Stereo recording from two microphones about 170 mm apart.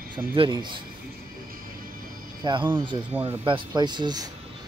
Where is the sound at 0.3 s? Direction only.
30° right (ahead or behind).